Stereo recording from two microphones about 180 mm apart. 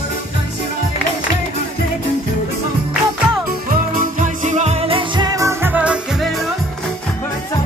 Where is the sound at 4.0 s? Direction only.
45° right (ahead or behind); by 6.3 s 5° right (ahead or behind).